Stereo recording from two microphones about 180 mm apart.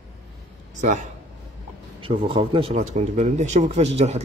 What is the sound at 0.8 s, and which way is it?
Speech, 40° right (ahead or behind).